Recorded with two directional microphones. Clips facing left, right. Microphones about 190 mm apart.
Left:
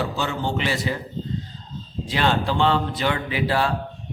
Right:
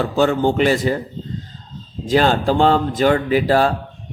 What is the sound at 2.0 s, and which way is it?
Speech, 40° right (ahead or behind).